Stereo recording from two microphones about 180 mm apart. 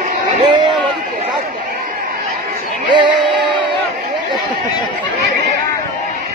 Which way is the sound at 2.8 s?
25° right (ahead or behind).